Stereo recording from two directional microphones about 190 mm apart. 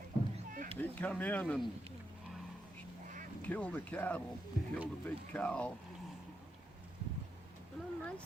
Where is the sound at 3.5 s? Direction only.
5° left (ahead or behind).